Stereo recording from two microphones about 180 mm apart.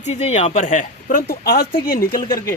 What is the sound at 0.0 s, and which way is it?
Speech, 40° left (ahead or behind).